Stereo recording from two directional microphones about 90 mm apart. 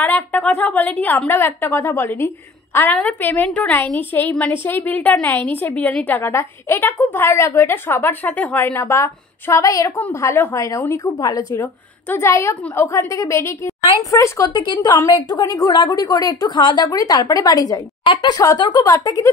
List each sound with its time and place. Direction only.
0.0 s a sound: 15° left (ahead or behind)
0.6 s a woman's voice: 20° left (ahead or behind); by 11.1 s 35° left (ahead or behind)
11.1 s a woman's voice: 45° left (ahead or behind)
11.5 s a woman's voice: 30° left (ahead or behind)
14.5 s a woman's voice: 55° left (ahead or behind)
15.7 s a woman's voice: 55° left (ahead or behind)
18.0 s a woman's voice: 55° left (ahead or behind)
18.9 s a woman's voice: 40° left (ahead or behind)